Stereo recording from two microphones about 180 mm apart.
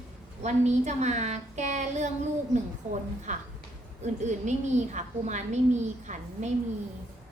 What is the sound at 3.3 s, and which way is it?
A woman's voice, 40° right (ahead or behind).